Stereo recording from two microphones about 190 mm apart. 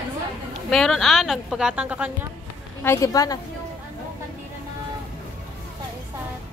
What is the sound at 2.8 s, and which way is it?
Speech, 20° left (ahead or behind).